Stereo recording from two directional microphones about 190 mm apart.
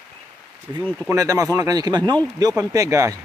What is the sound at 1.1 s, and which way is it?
Speech, 20° right (ahead or behind).